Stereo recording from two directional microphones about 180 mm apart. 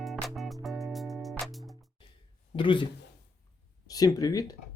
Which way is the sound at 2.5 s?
25° left (ahead or behind).